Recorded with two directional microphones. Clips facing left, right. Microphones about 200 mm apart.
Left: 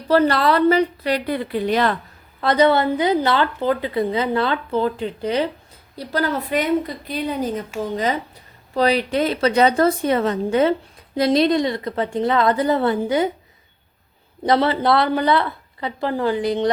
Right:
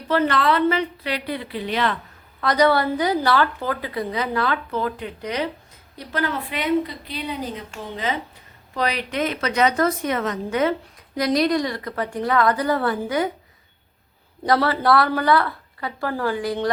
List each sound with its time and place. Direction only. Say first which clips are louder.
0.1 s a woman's voice: left 4 dB; 35° left (ahead or behind)
2.4 s a woman's voice: left 2 dB; 25° left (ahead or behind)
14.4 s speech: left 2 dB; 20° left (ahead or behind)